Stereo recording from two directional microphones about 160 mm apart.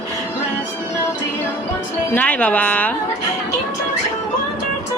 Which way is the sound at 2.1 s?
10° left (ahead or behind).